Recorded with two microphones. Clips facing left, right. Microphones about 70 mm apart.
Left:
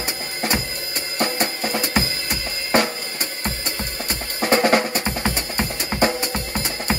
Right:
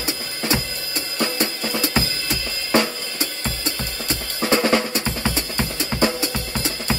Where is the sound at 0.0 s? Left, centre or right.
Left.